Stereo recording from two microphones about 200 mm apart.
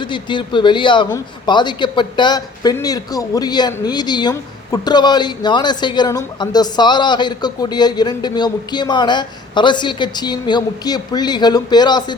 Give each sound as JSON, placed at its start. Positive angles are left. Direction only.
{"t": 0.0, "sound": "a man's voice", "side_deg": 25}